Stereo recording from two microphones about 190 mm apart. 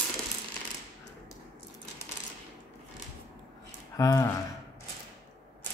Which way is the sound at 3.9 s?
20° left (ahead or behind).